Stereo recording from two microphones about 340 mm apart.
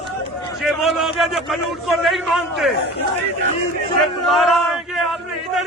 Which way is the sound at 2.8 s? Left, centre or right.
Left.